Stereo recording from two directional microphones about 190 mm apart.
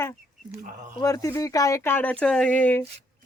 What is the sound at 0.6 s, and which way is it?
Speech, 45° right (ahead or behind).